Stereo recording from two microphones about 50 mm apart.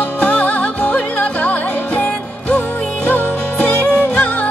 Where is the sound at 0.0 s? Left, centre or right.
Left.